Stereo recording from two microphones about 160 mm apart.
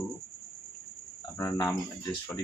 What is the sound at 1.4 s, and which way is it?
Cricket, 20° left (ahead or behind).